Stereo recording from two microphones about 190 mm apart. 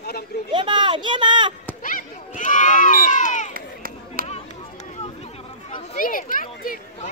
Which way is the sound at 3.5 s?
50° right (ahead or behind).